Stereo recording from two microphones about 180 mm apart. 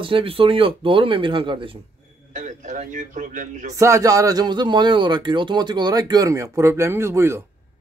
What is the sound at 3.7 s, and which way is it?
A man's voice, 15° right (ahead or behind).